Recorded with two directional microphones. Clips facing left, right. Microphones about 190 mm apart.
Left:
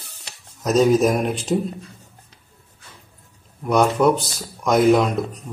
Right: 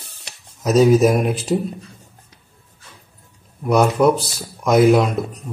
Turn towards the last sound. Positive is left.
turn(degrees=-5)  # may be behind; listen again after turning